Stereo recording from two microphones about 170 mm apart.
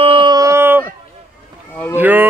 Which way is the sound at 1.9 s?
10° right (ahead or behind).